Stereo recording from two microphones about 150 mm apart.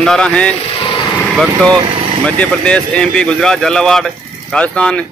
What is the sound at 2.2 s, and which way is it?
A man's voice, 5° left (ahead or behind).